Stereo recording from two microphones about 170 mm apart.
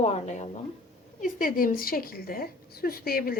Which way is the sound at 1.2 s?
55° left (ahead or behind).